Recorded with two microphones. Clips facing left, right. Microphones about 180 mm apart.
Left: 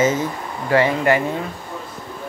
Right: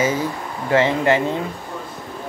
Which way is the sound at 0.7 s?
20° right (ahead or behind).